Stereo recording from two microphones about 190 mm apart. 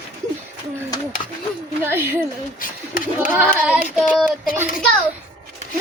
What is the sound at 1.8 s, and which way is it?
Speech, 10° right (ahead or behind).